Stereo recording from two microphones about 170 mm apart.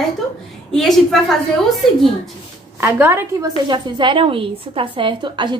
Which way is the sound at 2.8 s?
15° right (ahead or behind).